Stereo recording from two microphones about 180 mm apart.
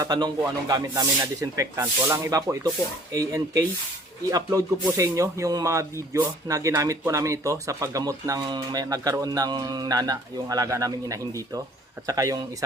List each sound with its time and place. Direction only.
0.0 s speech: 20° right (ahead or behind)